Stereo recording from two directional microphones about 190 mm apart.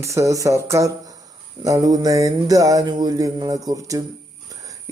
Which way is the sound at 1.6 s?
20° right (ahead or behind).